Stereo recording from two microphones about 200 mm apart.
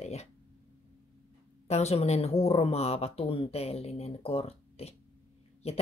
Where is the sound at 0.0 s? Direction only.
35° left (ahead or behind).